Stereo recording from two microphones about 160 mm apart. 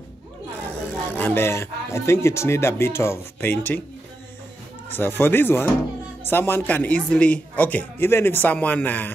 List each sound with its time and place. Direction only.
0.8 s speech: 10° left (ahead or behind)
4.8 s speech: 10° left (ahead or behind)